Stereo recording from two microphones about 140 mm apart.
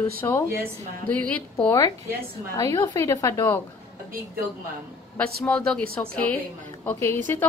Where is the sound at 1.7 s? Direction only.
25° left (ahead or behind).